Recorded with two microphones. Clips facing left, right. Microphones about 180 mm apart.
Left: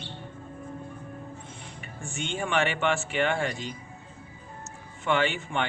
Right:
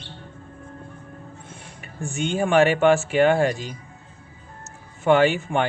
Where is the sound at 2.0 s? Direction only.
40° right (ahead or behind).